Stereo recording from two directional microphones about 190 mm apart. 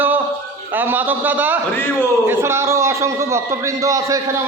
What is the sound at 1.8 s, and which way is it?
Speech, 10° left (ahead or behind).